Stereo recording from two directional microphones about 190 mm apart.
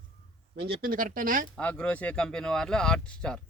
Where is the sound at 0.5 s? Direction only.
60° right (ahead or behind).